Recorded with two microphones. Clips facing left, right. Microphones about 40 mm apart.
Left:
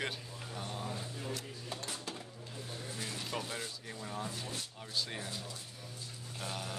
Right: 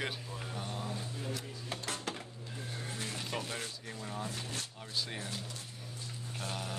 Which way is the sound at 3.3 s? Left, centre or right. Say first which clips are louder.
Even; right.